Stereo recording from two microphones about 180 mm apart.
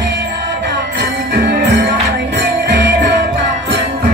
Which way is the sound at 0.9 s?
70° right (ahead or behind).